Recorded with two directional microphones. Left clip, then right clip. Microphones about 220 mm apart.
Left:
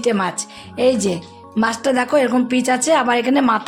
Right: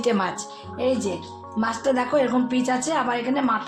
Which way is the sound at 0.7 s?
50° left (ahead or behind).